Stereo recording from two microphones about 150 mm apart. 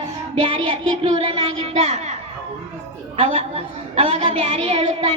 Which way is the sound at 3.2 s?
40° right (ahead or behind).